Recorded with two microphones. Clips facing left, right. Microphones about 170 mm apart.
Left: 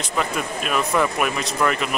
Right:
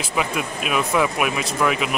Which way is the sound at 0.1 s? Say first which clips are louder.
Even; 5° right (ahead or behind).